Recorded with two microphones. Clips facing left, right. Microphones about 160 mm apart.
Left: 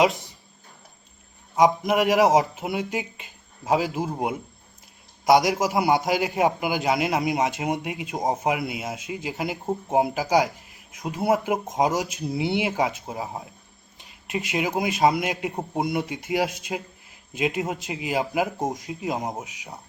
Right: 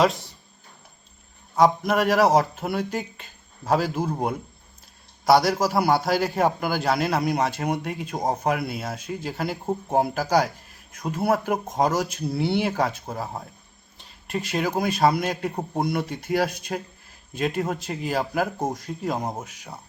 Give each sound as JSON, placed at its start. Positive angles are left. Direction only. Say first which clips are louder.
{"t": 0.0, "sound": "speech", "louder": "even", "side_deg": 15}
{"t": 1.5, "sound": "a man's voice", "louder": "even", "side_deg": 15}